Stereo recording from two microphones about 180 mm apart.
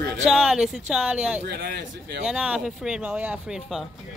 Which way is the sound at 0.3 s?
Centre (ahead or behind).